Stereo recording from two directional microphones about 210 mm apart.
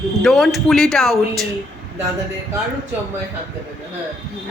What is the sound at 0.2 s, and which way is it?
Speech, centre (ahead or behind).